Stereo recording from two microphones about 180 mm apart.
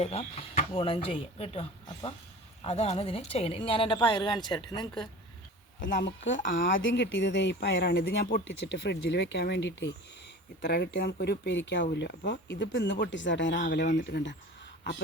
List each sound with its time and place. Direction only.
0.0 s a woman's voice: 35° left (ahead or behind)
5.8 s speech: 80° left
6.4 s speech: 50° left (ahead or behind)
6.7 s speech: 90° left
10.6 s speech: 60° left (ahead or behind)